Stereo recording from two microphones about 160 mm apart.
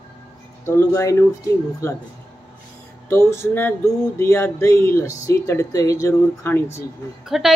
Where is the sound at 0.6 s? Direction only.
15° left (ahead or behind).